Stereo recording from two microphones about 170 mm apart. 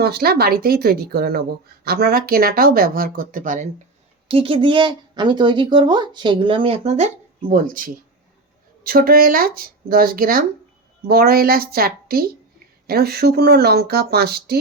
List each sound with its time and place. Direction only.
0.0 s speech: 65° right (ahead or behind)
4.3 s speech: 35° right (ahead or behind); by 14.6 s 70° right (ahead or behind)